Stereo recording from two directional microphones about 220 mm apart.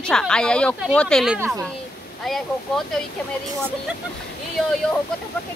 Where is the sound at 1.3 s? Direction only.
10° right (ahead or behind).